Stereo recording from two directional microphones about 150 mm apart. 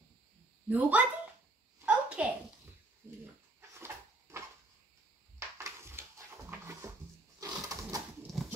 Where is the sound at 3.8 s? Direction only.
15° right (ahead or behind).